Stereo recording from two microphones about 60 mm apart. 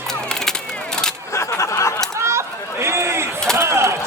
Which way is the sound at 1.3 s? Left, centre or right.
Left.